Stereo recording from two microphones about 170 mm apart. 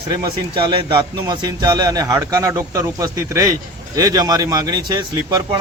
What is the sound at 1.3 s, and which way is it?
Speech, 25° right (ahead or behind).